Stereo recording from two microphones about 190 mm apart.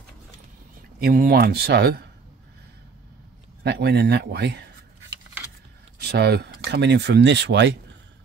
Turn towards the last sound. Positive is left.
turn(degrees=-65)  # may be behind; listen again after turning